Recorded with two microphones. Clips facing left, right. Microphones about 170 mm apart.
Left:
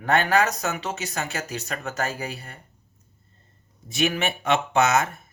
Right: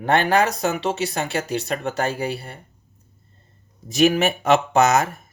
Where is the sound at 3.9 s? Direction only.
40° right (ahead or behind).